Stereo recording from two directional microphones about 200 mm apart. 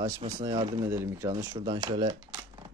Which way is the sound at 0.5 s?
25° right (ahead or behind).